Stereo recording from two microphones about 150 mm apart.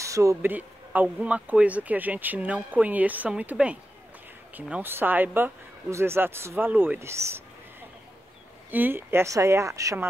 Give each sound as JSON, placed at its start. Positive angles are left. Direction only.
{"t": 0.0, "sound": "speech", "side_deg": -20}
{"t": 8.6, "sound": "speech", "side_deg": -10}